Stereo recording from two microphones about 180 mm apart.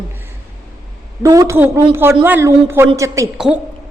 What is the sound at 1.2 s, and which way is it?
A man's voice, 15° right (ahead or behind).